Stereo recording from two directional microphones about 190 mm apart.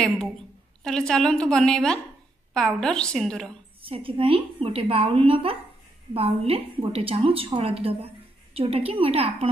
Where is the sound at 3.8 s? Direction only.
30° right (ahead or behind).